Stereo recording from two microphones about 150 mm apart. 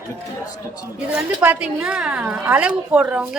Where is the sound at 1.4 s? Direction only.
10° right (ahead or behind).